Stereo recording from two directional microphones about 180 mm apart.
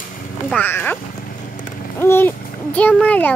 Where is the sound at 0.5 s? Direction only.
10° left (ahead or behind).